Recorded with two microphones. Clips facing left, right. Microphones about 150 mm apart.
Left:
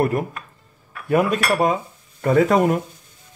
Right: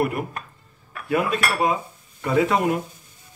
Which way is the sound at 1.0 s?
45° left (ahead or behind).